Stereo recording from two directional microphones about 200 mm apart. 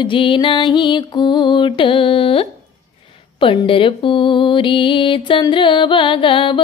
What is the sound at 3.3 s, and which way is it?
Mantra, 25° left (ahead or behind).